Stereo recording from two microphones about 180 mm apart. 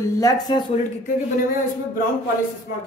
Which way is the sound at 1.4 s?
50° left (ahead or behind).